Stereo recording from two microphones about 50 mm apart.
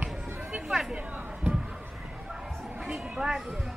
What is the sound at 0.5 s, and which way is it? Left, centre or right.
Chatter, centre.